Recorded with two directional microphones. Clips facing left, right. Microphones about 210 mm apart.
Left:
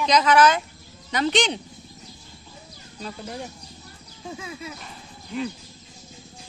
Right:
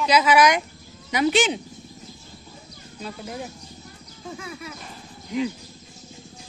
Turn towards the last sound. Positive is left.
turn(degrees=-15)  # may be behind; listen again after turning